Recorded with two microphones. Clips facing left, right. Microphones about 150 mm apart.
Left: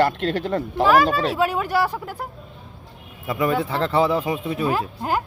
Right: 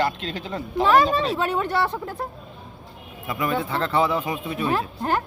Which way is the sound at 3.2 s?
30° left (ahead or behind).